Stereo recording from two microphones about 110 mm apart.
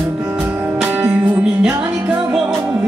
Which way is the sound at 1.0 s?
10° right (ahead or behind).